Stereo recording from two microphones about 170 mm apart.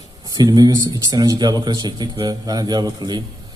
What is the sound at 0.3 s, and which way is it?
A man's voice, 25° right (ahead or behind).